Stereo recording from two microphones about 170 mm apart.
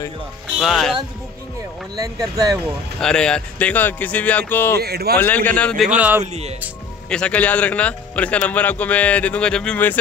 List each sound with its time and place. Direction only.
0.6 s speech: centre (ahead or behind)
2.0 s speech: 20° right (ahead or behind)
3.0 s a man's voice: 5° left (ahead or behind)
4.7 s speech: 70° right (ahead or behind)
5.2 s a man's voice: 10° left (ahead or behind)
5.9 s a man's voice: 10° right (ahead or behind)
7.1 s a man's voice: 5° left (ahead or behind)